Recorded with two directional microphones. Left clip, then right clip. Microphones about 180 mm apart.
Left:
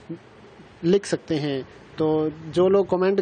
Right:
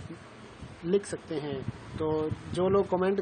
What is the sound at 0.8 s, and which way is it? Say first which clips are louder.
Speech: left 8 dB; 50° left (ahead or behind).